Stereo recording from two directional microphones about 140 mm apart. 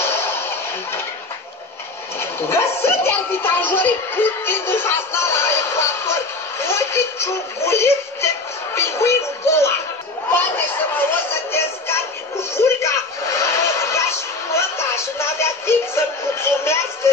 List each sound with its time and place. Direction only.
0.0 s a sound: 20° left (ahead or behind)
2.1 s speech: 15° left (ahead or behind)
6.6 s a sound: 20° left (ahead or behind)
8.7 s music: 20° left (ahead or behind)
12.5 s television: 20° left (ahead or behind)
14.5 s music: 20° left (ahead or behind)